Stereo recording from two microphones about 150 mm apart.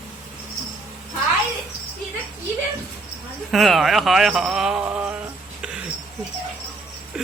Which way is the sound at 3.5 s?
Centre (ahead or behind).